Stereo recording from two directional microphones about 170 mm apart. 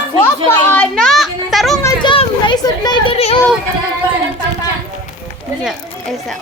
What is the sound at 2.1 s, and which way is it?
A child's voice, 30° left (ahead or behind).